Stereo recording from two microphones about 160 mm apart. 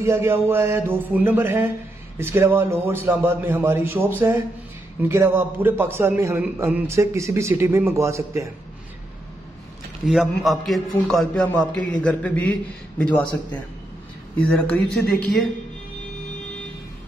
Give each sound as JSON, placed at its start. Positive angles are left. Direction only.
{"t": 0.0, "sound": "a man's voice", "side_deg": -15}
{"t": 10.0, "sound": "a man's voice", "side_deg": 0}